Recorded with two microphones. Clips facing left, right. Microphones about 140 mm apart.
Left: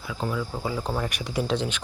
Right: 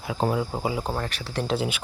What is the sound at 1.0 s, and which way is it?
Speech, 15° left (ahead or behind).